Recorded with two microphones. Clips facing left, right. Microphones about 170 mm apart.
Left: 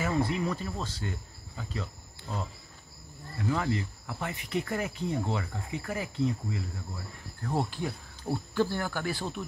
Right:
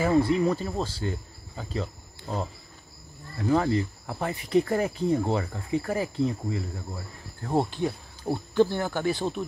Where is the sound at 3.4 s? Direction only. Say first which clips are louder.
Right 7 dB; 35° right (ahead or behind).